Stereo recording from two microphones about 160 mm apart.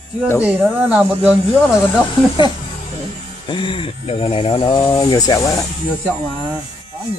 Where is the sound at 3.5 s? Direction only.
30° left (ahead or behind).